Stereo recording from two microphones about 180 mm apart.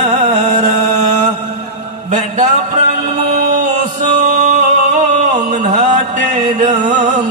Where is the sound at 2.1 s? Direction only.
40° right (ahead or behind).